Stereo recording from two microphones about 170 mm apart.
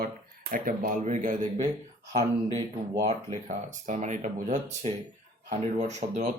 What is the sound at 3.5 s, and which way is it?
Speech, 45° right (ahead or behind).